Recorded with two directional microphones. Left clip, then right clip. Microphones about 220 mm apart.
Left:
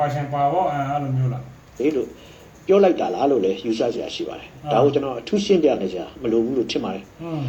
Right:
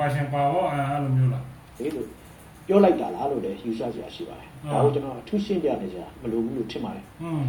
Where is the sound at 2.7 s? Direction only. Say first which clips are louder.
Left 3 dB; 35° left (ahead or behind).